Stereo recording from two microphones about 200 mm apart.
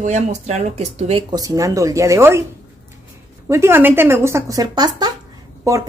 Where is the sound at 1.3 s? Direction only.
15° right (ahead or behind).